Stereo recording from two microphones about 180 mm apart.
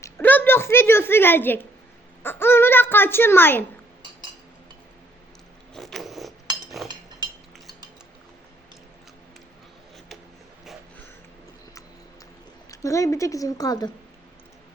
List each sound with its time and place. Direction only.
0.0 s a sound: 10° left (ahead or behind)
5.7 s vehicle: centre (ahead or behind)
6.8 s chink: centre (ahead or behind)
7.2 s cutlery: 25° right (ahead or behind)
12.7 s a woman's voice: 15° left (ahead or behind)